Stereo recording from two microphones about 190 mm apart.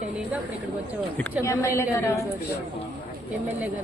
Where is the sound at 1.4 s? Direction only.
15° left (ahead or behind).